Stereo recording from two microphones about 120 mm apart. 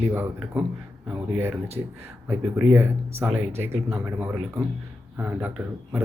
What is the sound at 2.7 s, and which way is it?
Speech, 20° right (ahead or behind).